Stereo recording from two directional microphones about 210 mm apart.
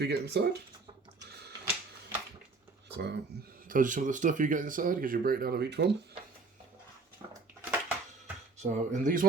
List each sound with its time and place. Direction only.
0.0 s speech: 50° right (ahead or behind)
2.9 s speech: 50° right (ahead or behind)
3.7 s speech: 40° right (ahead or behind)
7.6 s crushing: 10° right (ahead or behind)
8.5 s speech: 35° right (ahead or behind)